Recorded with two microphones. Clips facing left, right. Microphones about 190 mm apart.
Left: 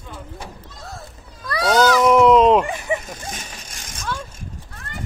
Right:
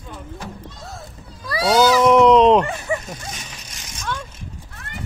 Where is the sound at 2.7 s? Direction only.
15° left (ahead or behind).